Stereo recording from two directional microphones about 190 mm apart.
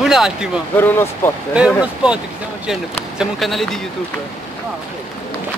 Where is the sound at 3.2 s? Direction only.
Centre (ahead or behind).